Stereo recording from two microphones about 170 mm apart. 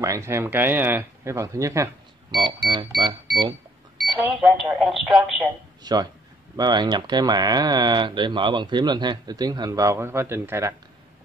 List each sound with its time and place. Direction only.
0.0 s speech: 15° right (ahead or behind)
4.2 s speech: centre (ahead or behind)
5.8 s speech: 25° right (ahead or behind)